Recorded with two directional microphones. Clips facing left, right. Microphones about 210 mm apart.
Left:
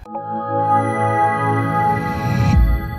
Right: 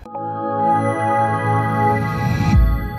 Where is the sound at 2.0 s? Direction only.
Centre (ahead or behind).